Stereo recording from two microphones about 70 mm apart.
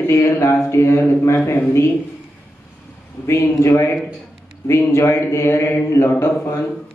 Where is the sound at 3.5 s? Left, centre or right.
Left.